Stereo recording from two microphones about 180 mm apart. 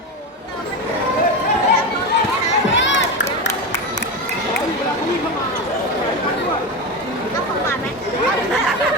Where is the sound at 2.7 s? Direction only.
90° left.